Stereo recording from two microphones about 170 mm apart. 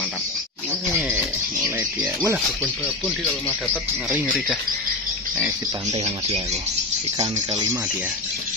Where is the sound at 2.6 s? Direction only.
Centre (ahead or behind).